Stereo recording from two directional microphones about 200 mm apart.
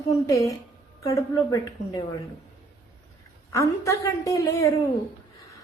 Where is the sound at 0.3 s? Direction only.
15° left (ahead or behind).